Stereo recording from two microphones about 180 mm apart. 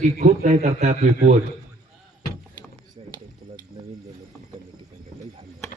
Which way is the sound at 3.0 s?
30° right (ahead or behind).